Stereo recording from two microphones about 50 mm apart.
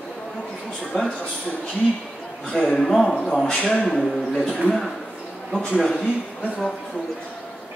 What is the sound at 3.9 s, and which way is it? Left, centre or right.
Speech, centre.